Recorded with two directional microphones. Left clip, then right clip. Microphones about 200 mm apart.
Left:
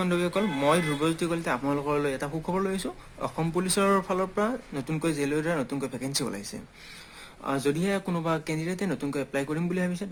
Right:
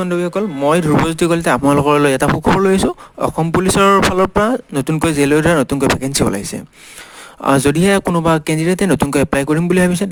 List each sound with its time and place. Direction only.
0.0 s speech: 40° right (ahead or behind)
7.4 s speech: 50° right (ahead or behind)